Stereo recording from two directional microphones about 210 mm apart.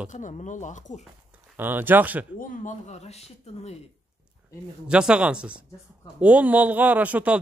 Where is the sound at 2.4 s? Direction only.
40° left (ahead or behind).